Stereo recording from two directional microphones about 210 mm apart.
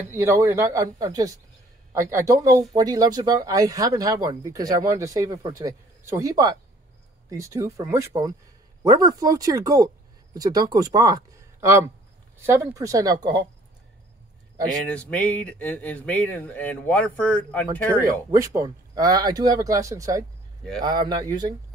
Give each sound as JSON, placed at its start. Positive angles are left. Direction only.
{"t": 0.1, "sound": "speech", "side_deg": -15}
{"t": 14.9, "sound": "speech", "side_deg": 5}
{"t": 18.3, "sound": "speech", "side_deg": -15}